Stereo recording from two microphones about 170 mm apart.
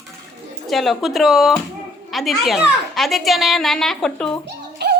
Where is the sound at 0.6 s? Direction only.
Centre (ahead or behind).